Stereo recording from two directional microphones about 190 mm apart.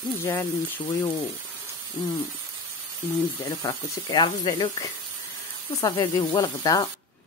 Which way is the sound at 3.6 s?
20° left (ahead or behind).